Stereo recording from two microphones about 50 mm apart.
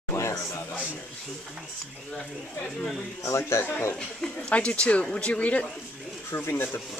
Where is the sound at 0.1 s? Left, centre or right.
Left.